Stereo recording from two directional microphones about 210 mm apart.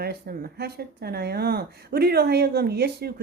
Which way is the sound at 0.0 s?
45° right (ahead or behind).